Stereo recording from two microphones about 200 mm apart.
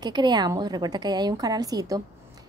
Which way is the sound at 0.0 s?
20° right (ahead or behind).